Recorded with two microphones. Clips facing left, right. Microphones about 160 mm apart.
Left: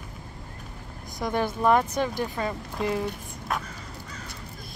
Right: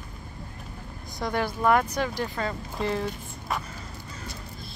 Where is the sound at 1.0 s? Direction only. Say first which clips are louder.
Left 1 dB; 20° left (ahead or behind).